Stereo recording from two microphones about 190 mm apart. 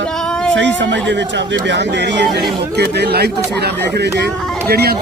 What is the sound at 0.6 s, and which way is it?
Speech, 70° right (ahead or behind).